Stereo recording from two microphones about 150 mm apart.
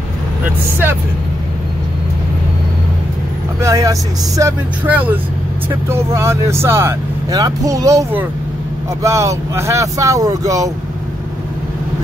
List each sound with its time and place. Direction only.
3.6 s speech: 20° right (ahead or behind)
4.8 s speech: 10° right (ahead or behind)